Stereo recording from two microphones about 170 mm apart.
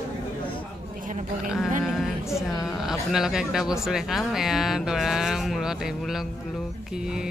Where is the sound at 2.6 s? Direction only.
5° right (ahead or behind).